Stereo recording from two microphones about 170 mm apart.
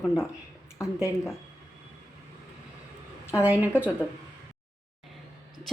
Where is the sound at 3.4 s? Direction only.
10° right (ahead or behind).